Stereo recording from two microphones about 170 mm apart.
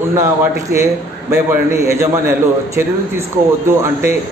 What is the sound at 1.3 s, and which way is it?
A man's voice, 15° right (ahead or behind).